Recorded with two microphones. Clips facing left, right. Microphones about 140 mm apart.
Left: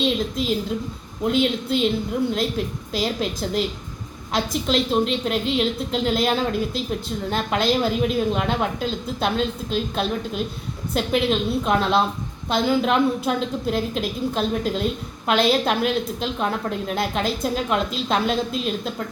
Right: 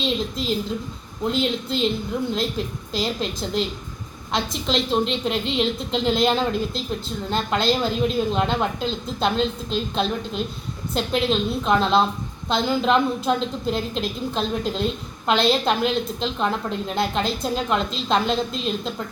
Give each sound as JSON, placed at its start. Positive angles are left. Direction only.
{"t": 0.0, "sound": "a woman's voice", "side_deg": 5}